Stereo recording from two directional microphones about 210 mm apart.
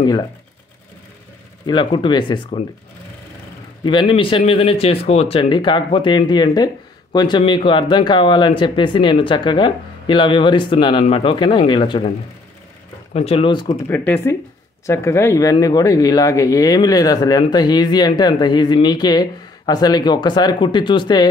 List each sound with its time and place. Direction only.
1.7 s speech: 20° left (ahead or behind)
3.8 s speech: 20° left (ahead or behind)
13.1 s speech: 30° left (ahead or behind)
13.8 s speech: 10° left (ahead or behind)